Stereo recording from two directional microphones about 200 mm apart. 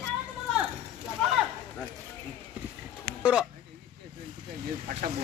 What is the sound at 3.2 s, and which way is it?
Speech, 5° right (ahead or behind).